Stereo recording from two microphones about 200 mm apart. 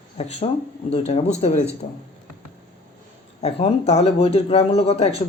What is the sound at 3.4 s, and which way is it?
A woman's voice, 30° left (ahead or behind).